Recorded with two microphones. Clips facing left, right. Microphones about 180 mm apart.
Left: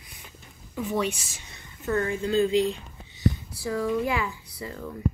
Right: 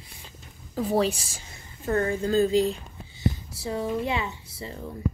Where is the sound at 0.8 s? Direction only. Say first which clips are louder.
Right 4 dB; 35° right (ahead or behind).